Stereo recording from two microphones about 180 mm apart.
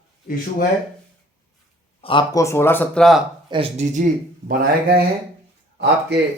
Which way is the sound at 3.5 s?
30° right (ahead or behind).